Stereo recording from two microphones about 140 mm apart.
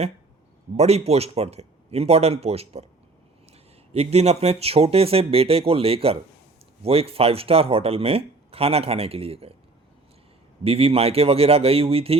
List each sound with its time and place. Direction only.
0.8 s speech: 50° right (ahead or behind)
3.9 s speech: 45° right (ahead or behind)
10.6 s speech: 45° right (ahead or behind)